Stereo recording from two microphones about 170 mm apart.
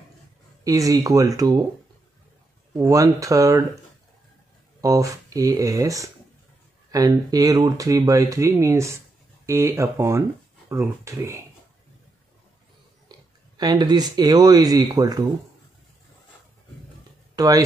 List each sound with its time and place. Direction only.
0.7 s speech: 20° right (ahead or behind)
2.7 s speech: 20° right (ahead or behind)
4.8 s speech: 20° right (ahead or behind)
13.6 s speech: 25° right (ahead or behind)
17.4 s speech: 20° right (ahead or behind)